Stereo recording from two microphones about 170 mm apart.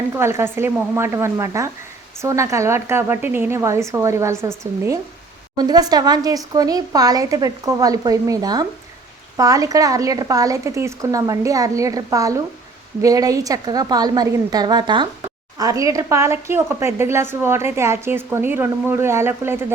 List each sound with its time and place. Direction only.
0.1 s a woman's voice: 15° right (ahead or behind)